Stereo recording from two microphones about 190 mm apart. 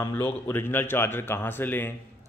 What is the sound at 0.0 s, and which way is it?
Speech, 10° left (ahead or behind).